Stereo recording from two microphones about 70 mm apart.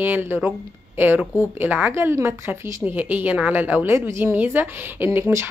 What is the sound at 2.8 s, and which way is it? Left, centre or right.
A woman's voice, right.